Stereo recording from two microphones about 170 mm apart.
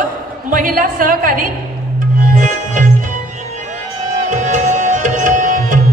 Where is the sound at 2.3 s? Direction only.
50° right (ahead or behind).